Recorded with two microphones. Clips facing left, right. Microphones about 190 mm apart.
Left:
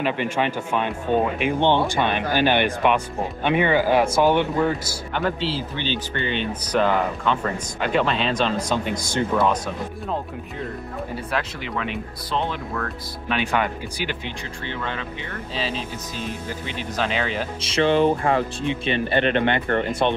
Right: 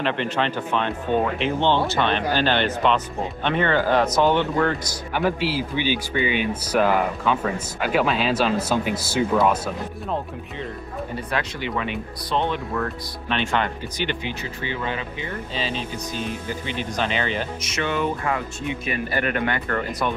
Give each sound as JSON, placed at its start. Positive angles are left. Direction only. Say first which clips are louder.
{"t": 0.0, "sound": "speech", "louder": "left 1 dB", "side_deg": 10}
{"t": 5.1, "sound": "speech", "louder": "right 2 dB", "side_deg": -10}
{"t": 11.1, "sound": "speech", "louder": "right 1 dB", "side_deg": 0}
{"t": 14.2, "sound": "speech", "louder": "right 2 dB", "side_deg": -5}
{"t": 17.6, "sound": "speech", "louder": "left 12 dB", "side_deg": 30}